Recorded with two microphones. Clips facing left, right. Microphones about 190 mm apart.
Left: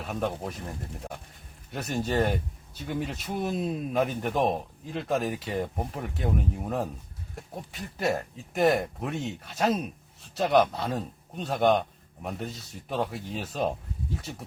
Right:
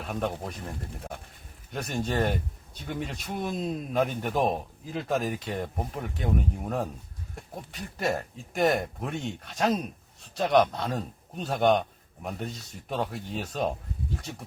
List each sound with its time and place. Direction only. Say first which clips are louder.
0.0 s a man's voice: left 1 dB; centre (ahead or behind)
1.7 s a man's voice: left 2 dB; centre (ahead or behind)